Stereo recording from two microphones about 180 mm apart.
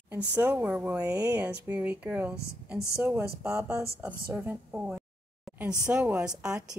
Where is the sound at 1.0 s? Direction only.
20° right (ahead or behind).